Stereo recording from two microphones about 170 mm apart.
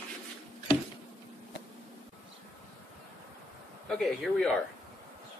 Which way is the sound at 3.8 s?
Centre (ahead or behind).